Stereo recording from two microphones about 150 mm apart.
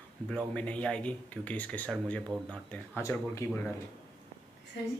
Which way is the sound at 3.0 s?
20° left (ahead or behind).